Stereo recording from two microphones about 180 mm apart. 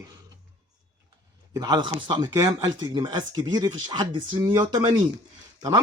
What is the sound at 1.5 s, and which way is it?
Speech, 25° right (ahead or behind).